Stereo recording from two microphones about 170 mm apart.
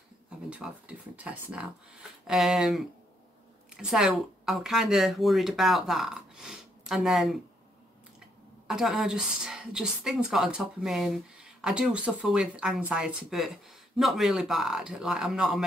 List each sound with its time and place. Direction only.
0.5 s a woman's voice: 10° right (ahead or behind)
8.6 s a woman's voice: 5° right (ahead or behind)